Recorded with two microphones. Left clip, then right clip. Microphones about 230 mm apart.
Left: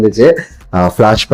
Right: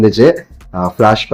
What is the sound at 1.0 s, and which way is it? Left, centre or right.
Speech, left.